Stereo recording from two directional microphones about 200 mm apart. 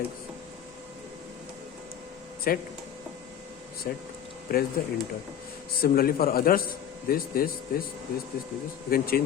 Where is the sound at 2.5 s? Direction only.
45° left (ahead or behind).